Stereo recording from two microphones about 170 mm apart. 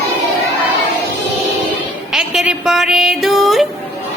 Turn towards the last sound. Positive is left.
turn(degrees=0)  # may be behind; listen again after turning